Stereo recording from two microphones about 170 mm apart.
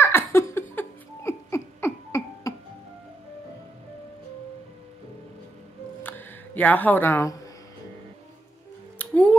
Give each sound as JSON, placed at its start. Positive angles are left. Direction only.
{"t": 0.0, "sound": "laughter", "side_deg": 15}
{"t": 6.0, "sound": "music", "side_deg": 10}
{"t": 8.9, "sound": "a sound", "side_deg": 10}